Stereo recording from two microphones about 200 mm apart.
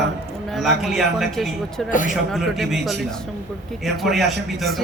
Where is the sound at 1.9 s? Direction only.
40° left (ahead or behind).